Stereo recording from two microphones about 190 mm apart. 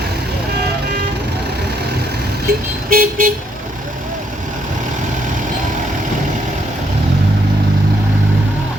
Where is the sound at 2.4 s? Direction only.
50° right (ahead or behind).